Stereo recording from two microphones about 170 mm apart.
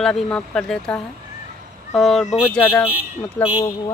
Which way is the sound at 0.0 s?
5° left (ahead or behind).